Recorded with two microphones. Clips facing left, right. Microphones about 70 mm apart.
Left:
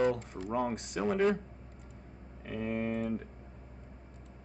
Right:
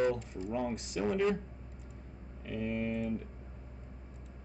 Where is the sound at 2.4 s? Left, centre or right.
Left.